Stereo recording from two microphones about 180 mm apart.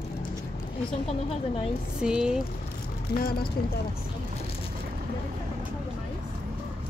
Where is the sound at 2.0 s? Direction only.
5° right (ahead or behind).